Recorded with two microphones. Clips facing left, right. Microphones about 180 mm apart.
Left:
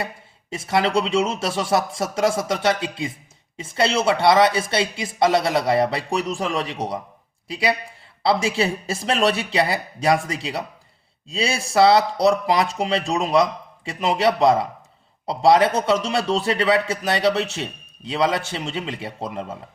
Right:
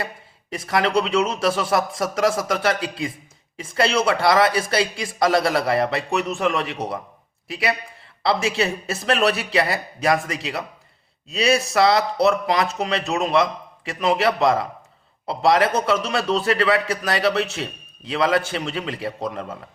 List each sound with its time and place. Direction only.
0.5 s a man's voice: 25° left (ahead or behind)